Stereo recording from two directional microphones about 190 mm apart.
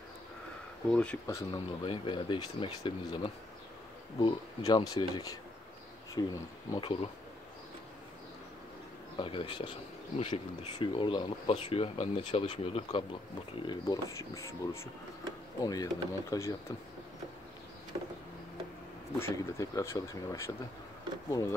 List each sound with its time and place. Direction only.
0.8 s speech: 5° left (ahead or behind)
1.2 s speech: 20° left (ahead or behind)
4.6 s speech: 20° left (ahead or behind)
6.7 s speech: 25° left (ahead or behind)
9.1 s speech: 30° left (ahead or behind)
13.7 s speech: 20° left (ahead or behind)
19.1 s speech: 15° left (ahead or behind)